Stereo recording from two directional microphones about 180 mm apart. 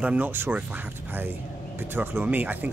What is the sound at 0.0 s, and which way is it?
Speech, 10° right (ahead or behind).